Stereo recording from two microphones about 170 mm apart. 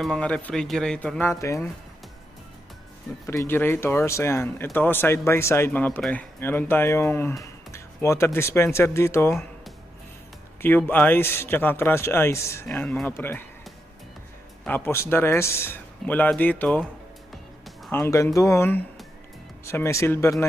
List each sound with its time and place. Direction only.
0.0 s speech: 5° left (ahead or behind)
3.3 s speech: 15° left (ahead or behind)
10.6 s speech: 10° left (ahead or behind)
14.6 s speech: 15° left (ahead or behind)
17.9 s speech: 15° left (ahead or behind)